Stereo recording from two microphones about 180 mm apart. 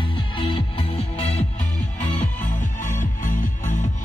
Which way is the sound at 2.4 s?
45° left (ahead or behind).